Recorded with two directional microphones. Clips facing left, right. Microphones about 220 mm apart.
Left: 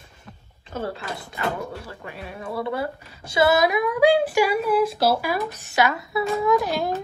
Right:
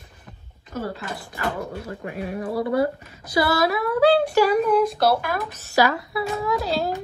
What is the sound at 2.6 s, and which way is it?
Speech, 25° left (ahead or behind).